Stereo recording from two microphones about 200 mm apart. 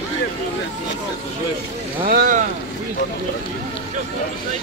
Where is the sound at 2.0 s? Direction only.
45° right (ahead or behind).